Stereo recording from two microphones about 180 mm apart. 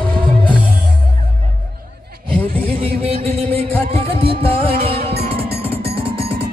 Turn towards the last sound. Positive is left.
turn(degrees=-30)  # may be behind; listen again after turning